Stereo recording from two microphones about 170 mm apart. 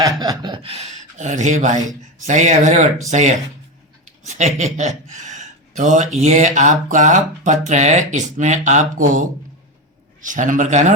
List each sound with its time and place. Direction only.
0.0 s speech: 25° right (ahead or behind); by 10.9 s 45° right (ahead or behind)